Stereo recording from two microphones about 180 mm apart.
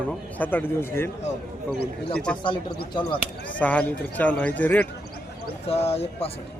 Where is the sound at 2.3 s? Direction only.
5° left (ahead or behind).